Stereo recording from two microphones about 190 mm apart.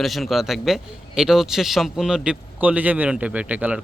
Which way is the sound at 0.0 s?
Centre (ahead or behind).